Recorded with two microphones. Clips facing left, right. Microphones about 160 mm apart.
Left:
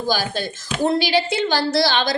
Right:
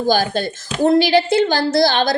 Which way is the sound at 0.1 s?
50° right (ahead or behind).